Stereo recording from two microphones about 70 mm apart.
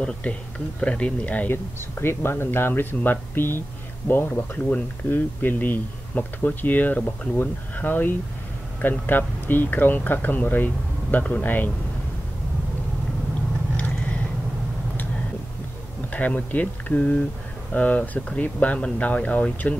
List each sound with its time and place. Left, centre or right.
0.0 s speech: centre
1.5 s speech: left
16.1 s speech: left